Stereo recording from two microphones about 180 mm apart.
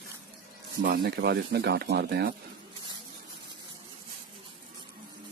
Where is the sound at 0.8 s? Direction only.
60° right (ahead or behind).